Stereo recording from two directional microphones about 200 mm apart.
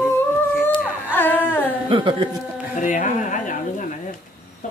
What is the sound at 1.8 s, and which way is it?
Speech, 25° right (ahead or behind).